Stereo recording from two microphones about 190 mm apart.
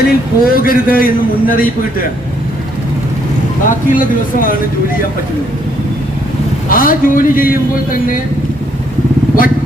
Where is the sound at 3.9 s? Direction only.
45° left (ahead or behind).